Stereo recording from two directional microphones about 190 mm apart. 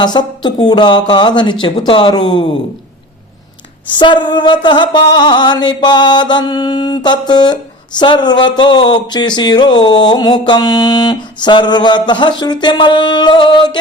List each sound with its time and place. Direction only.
0.0 s mantra: 20° left (ahead or behind)
3.9 s mantra: 25° left (ahead or behind)